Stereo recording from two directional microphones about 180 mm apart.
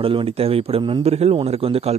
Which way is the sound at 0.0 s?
30° right (ahead or behind).